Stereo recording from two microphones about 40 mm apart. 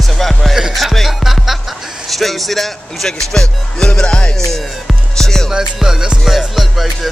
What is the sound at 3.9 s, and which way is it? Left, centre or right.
Music, left.